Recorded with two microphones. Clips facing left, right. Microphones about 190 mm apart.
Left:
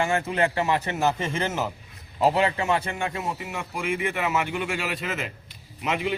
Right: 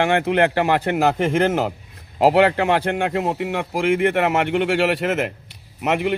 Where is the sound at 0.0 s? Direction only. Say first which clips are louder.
Right 6 dB; 70° right (ahead or behind).